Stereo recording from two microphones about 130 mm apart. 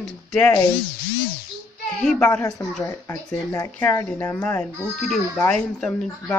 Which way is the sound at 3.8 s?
20° left (ahead or behind).